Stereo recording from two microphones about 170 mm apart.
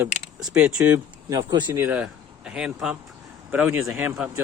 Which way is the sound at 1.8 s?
10° right (ahead or behind).